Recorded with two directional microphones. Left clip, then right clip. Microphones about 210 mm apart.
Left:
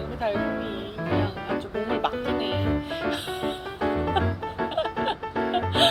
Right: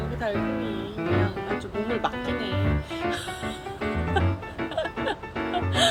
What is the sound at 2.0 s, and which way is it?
Music, 10° right (ahead or behind).